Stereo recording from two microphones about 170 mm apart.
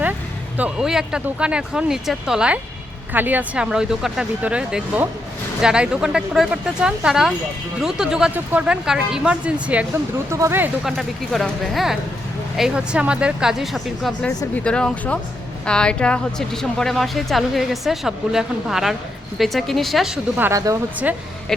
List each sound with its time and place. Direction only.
0.5 s speech: 5° right (ahead or behind)
10.8 s speech: centre (ahead or behind); by 20.7 s 20° right (ahead or behind)